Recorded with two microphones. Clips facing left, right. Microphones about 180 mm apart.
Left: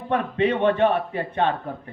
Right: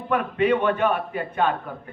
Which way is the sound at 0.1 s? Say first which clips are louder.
Right 1 dB; 30° left (ahead or behind).